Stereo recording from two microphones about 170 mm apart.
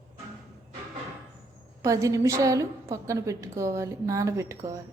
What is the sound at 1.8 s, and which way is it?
A woman's voice, 20° right (ahead or behind).